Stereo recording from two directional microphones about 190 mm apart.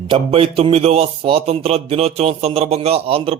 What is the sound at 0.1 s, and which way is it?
Speech, 30° right (ahead or behind).